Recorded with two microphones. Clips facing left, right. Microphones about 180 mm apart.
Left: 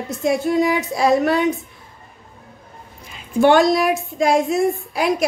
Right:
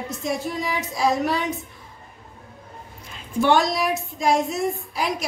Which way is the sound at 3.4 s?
55° left (ahead or behind).